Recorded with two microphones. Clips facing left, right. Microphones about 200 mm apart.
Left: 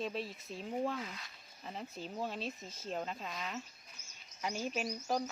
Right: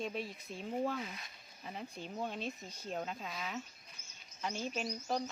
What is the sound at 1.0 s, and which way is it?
Speech, 20° right (ahead or behind).